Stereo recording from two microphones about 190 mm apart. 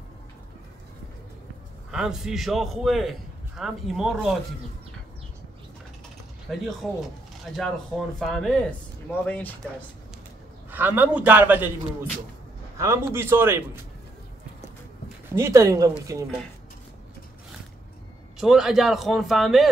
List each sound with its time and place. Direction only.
1.9 s a man's voice: 5° right (ahead or behind)
6.5 s a man's voice: centre (ahead or behind)
10.7 s a man's voice: 10° right (ahead or behind)
15.3 s a man's voice: 15° right (ahead or behind)
18.4 s a man's voice: centre (ahead or behind)